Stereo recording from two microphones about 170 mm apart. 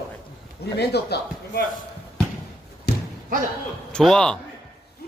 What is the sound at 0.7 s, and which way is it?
Speech, 75° left (ahead or behind).